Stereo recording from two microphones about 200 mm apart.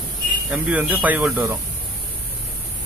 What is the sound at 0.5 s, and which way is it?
Speech, 10° right (ahead or behind).